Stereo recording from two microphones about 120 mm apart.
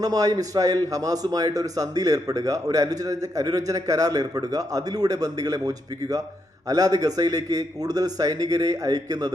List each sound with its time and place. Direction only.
0.0 s a man's voice: 30° right (ahead or behind)